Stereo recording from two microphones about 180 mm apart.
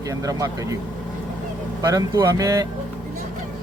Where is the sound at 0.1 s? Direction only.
20° right (ahead or behind).